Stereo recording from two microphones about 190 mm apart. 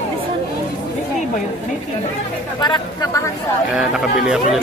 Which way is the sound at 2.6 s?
25° left (ahead or behind).